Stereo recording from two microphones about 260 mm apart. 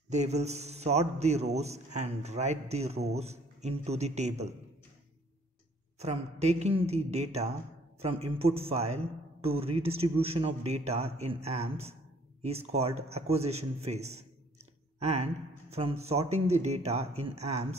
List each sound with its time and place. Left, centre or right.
0.1 s a man's voice: right
5.9 s a man's voice: right